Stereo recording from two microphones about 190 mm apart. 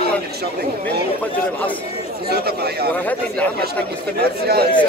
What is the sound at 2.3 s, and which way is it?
Speech, 55° right (ahead or behind).